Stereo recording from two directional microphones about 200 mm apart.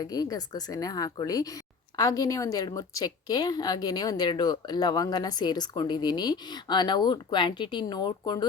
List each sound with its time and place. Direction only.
0.0 s a woman's voice: 20° left (ahead or behind)